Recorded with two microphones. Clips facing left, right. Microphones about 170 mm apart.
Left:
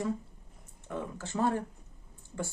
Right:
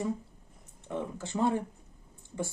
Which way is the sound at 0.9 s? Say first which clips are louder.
Right 2 dB; 15° right (ahead or behind).